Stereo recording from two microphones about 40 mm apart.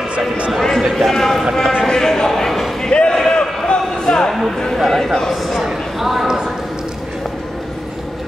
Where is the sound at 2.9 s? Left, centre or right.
Left.